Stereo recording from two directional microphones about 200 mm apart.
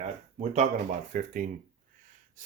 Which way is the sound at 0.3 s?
35° right (ahead or behind).